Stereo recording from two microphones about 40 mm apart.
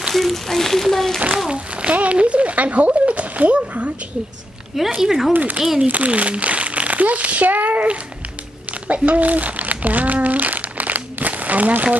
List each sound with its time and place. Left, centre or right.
0.1 s speech: centre
1.5 s speech: right
4.7 s speech: centre
5.3 s speech: right
10.2 s crumpling: right